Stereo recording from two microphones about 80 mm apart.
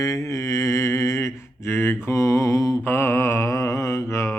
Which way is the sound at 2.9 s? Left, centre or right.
Left.